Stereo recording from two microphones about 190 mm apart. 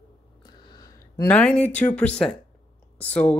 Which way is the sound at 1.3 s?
5° left (ahead or behind).